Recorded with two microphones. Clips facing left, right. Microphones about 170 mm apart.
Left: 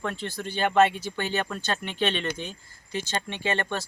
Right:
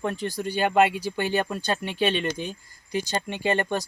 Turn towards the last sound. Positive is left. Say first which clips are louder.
# right 4 dB
turn(degrees=-15)  # may be behind; listen again after turning